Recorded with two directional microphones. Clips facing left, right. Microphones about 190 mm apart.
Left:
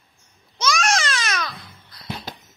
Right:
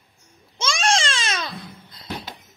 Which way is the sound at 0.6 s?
30° right (ahead or behind).